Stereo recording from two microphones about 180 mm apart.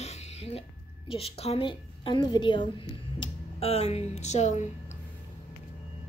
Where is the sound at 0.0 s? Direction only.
35° left (ahead or behind).